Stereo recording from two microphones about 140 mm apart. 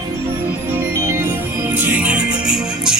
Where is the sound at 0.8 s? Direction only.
20° right (ahead or behind).